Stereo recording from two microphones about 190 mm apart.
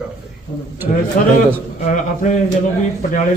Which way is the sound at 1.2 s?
45° left (ahead or behind).